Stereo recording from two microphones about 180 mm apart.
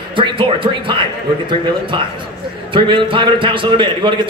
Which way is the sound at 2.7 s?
25° right (ahead or behind).